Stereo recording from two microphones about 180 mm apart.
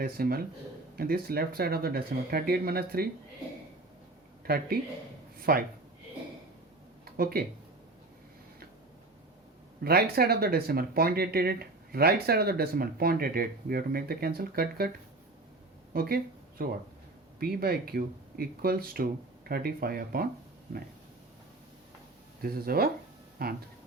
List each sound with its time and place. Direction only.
0.0 s speech: 55° right (ahead or behind)
4.4 s speech: 60° right (ahead or behind)
7.0 s a sound: 55° right (ahead or behind)
9.8 s speech: 60° right (ahead or behind)
15.9 s speech: 55° right (ahead or behind)
22.4 s speech: 55° right (ahead or behind)